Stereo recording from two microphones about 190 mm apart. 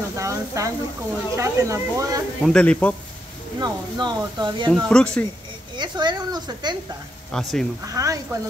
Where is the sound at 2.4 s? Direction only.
5° left (ahead or behind).